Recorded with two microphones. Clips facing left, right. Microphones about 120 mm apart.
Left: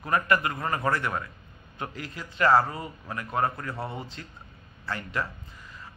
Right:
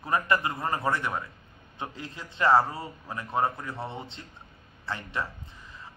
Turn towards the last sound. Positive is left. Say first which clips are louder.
# left 1 dB
turn(degrees=-20)  # may be behind; listen again after turning